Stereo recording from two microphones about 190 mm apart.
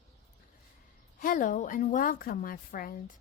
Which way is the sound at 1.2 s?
45° left (ahead or behind).